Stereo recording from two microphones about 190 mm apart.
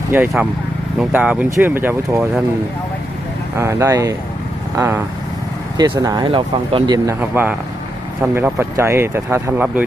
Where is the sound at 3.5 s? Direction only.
15° right (ahead or behind).